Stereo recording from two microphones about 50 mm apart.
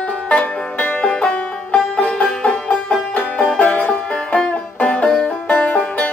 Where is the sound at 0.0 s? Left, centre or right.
Left.